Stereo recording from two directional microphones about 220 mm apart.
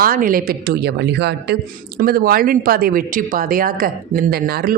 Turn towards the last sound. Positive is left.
turn(degrees=-45)  # may be behind; listen again after turning